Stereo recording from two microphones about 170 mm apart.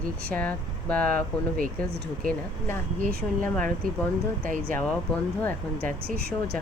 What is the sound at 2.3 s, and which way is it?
Speech, 15° left (ahead or behind).